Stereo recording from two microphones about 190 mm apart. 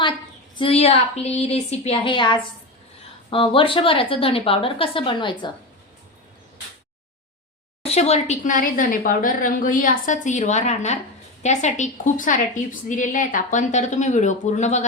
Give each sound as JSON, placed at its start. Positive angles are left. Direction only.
{"t": 0.5, "sound": "a woman's voice", "side_deg": 30}
{"t": 7.9, "sound": "a woman's voice", "side_deg": 35}